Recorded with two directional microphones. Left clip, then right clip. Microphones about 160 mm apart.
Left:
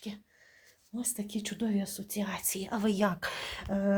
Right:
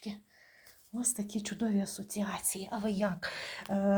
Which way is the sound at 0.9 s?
Centre (ahead or behind).